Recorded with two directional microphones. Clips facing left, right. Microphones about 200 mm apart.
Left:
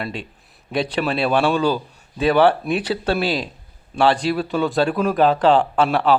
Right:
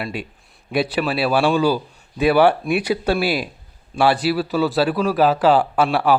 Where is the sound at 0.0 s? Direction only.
10° right (ahead or behind).